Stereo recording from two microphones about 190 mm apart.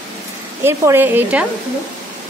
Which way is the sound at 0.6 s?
15° right (ahead or behind).